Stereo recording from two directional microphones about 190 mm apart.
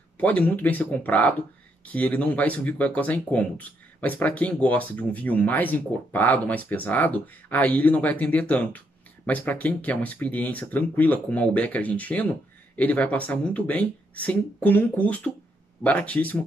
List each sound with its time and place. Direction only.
0.2 s speech: 5° left (ahead or behind)